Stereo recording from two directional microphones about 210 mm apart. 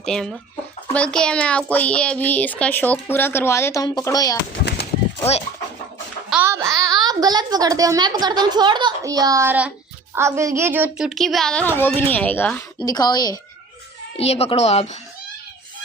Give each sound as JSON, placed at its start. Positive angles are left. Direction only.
{"t": 0.0, "sound": "a child's voice", "side_deg": 0}
{"t": 4.5, "sound": "a sound", "side_deg": 50}
{"t": 6.3, "sound": "a child's voice", "side_deg": -10}
{"t": 14.2, "sound": "speech", "side_deg": 30}